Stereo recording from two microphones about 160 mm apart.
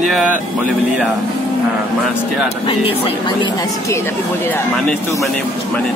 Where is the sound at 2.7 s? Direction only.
35° left (ahead or behind).